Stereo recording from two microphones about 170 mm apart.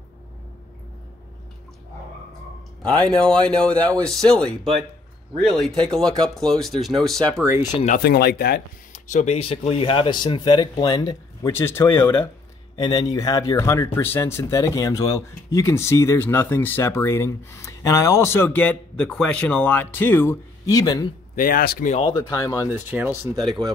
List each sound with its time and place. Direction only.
2.8 s speech: 5° left (ahead or behind)
5.9 s speech: 5° left (ahead or behind)
8.0 s speech: 65° left (ahead or behind)
8.9 s speech: 45° left (ahead or behind); by 12.3 s 15° left (ahead or behind)
12.7 s speech: 25° left (ahead or behind)
21.4 s speech: 60° left (ahead or behind)
21.9 s speech: 30° left (ahead or behind)
22.3 s speech: 20° left (ahead or behind)
22.7 s speech: 10° right (ahead or behind)